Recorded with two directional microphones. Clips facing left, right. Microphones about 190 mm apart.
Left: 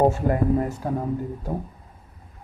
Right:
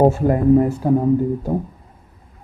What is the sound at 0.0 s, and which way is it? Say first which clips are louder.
Speech: right 5 dB; 25° right (ahead or behind).